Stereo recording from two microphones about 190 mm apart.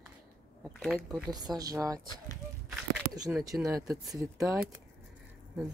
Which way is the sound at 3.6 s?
15° right (ahead or behind).